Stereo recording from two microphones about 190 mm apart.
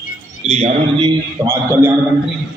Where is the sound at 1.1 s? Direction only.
15° right (ahead or behind).